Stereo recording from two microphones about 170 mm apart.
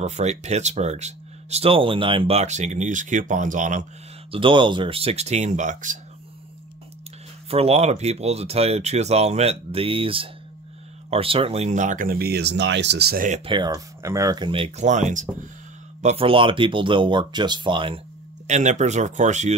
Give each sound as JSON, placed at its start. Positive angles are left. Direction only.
{"t": 0.0, "sound": "speech", "side_deg": -40}
{"t": 4.3, "sound": "speech", "side_deg": -30}
{"t": 7.4, "sound": "speech", "side_deg": -35}
{"t": 13.5, "sound": "speech", "side_deg": -25}
{"t": 18.5, "sound": "speech", "side_deg": -45}